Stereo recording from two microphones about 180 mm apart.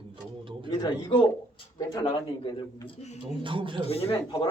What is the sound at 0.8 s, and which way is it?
A man's voice, 25° left (ahead or behind).